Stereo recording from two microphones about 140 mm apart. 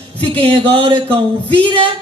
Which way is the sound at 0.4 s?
45° right (ahead or behind).